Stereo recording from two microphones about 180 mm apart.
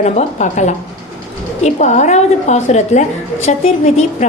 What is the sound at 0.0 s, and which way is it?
A woman's voice, 40° left (ahead or behind).